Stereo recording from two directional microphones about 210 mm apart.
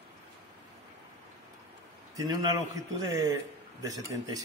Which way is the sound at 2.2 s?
15° right (ahead or behind).